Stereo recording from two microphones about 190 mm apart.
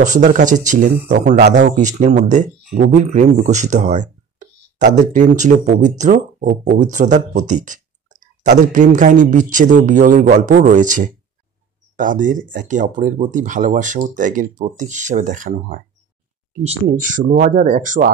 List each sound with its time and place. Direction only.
0.0 s speech: 40° right (ahead or behind)